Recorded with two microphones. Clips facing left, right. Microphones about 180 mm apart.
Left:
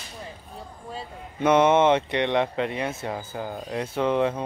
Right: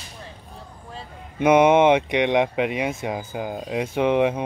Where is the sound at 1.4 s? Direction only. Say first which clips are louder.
Right 3 dB; 15° right (ahead or behind).